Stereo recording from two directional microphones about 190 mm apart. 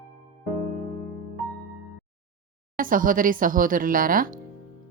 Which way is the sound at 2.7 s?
45° right (ahead or behind).